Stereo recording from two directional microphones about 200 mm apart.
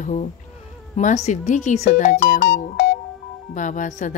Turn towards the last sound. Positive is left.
turn(degrees=40)  # may be behind; listen again after turning